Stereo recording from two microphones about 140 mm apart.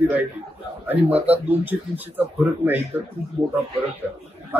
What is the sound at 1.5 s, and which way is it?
A man's voice, 10° right (ahead or behind).